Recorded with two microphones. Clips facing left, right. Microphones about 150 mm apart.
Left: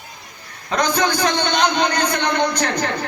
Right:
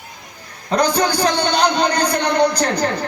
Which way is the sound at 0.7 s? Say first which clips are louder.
Right 2 dB; 35° right (ahead or behind).